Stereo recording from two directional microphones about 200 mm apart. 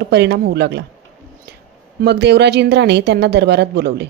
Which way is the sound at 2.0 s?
55° right (ahead or behind).